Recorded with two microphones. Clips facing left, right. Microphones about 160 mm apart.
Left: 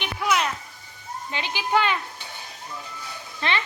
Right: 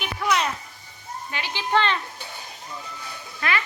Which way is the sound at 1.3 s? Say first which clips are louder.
Left 1 dB; 20° left (ahead or behind).